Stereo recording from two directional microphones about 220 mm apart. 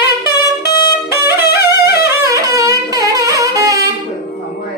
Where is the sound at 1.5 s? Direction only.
50° left (ahead or behind).